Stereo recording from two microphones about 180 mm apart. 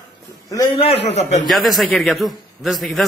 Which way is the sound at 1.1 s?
35° left (ahead or behind).